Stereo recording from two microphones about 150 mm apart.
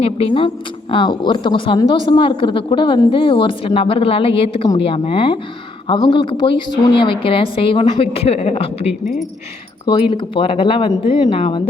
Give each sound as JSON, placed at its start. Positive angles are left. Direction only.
{"t": 0.0, "sound": "speech", "side_deg": 40}